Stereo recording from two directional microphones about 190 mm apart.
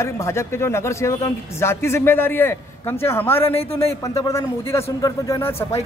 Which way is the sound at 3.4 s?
30° left (ahead or behind).